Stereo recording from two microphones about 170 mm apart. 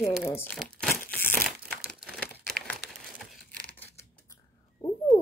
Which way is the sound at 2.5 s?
Centre (ahead or behind).